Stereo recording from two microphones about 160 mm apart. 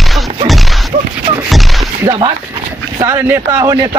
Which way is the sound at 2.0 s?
25° right (ahead or behind).